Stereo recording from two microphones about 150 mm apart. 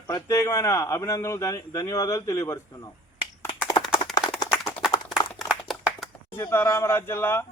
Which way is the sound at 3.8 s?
25° left (ahead or behind).